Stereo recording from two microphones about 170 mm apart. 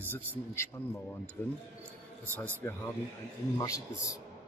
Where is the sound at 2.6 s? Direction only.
15° left (ahead or behind).